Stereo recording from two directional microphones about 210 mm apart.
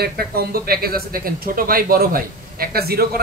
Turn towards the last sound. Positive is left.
turn(degrees=-45)  # may be behind; listen again after turning